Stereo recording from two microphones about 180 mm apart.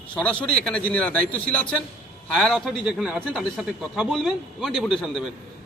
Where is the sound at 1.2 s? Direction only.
50° right (ahead or behind).